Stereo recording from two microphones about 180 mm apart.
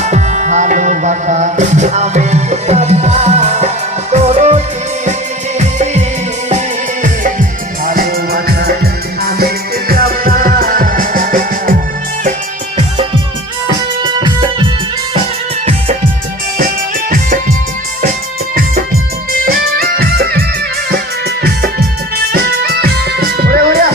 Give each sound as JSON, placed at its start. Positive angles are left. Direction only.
{"t": 0.0, "sound": "music", "side_deg": -40}
{"t": 7.9, "sound": "music", "side_deg": -55}
{"t": 14.1, "sound": "music", "side_deg": -25}
{"t": 19.5, "sound": "music", "side_deg": -55}
{"t": 21.4, "sound": "music", "side_deg": -60}